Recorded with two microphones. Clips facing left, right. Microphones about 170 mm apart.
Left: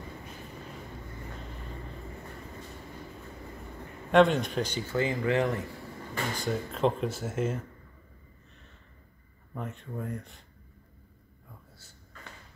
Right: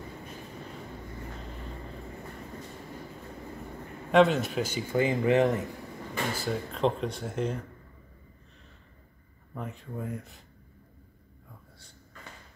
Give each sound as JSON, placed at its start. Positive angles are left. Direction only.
{"t": 4.1, "sound": "a man's voice", "side_deg": 0}
{"t": 6.3, "sound": "speech", "side_deg": 0}
{"t": 9.5, "sound": "speech", "side_deg": 0}